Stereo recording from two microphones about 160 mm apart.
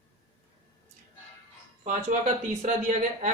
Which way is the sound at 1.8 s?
50° right (ahead or behind).